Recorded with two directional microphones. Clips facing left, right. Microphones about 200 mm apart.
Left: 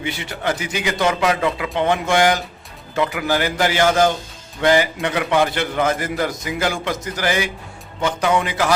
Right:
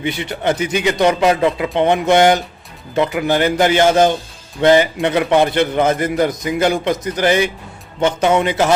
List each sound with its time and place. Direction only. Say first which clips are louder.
0.0 s a man's voice: right 5 dB; 20° right (ahead or behind)